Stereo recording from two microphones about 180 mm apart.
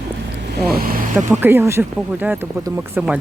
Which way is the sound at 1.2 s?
15° right (ahead or behind).